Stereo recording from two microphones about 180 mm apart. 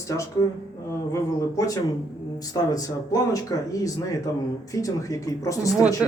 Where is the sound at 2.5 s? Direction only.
20° left (ahead or behind).